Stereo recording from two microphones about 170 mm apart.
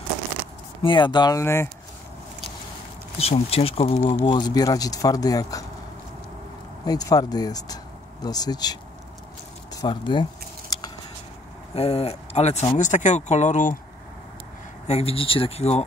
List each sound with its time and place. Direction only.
0.8 s speech: 25° left (ahead or behind)
3.2 s speech: 35° left (ahead or behind); by 5.7 s 20° left (ahead or behind)
6.8 s speech: 20° left (ahead or behind)
9.8 s speech: 25° left (ahead or behind)
11.7 s speech: 35° left (ahead or behind)
14.9 s speech: 35° left (ahead or behind)